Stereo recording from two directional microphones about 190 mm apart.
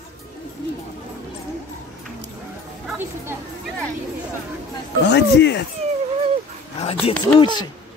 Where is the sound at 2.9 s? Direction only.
10° right (ahead or behind).